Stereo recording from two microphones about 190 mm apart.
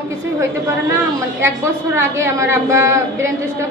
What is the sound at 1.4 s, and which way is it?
A woman's voice, 15° right (ahead or behind).